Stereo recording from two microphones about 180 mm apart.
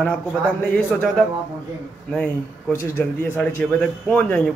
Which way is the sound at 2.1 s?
5° left (ahead or behind).